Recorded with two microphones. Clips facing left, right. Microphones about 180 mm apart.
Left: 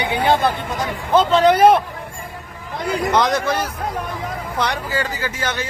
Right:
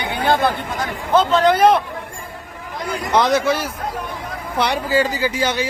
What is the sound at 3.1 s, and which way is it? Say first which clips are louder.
Speech: right 3 dB; 5° right (ahead or behind).